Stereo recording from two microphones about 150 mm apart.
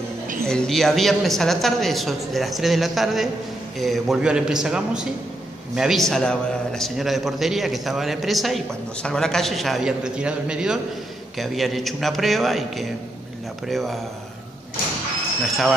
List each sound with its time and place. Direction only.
0.5 s a man's voice: 5° left (ahead or behind)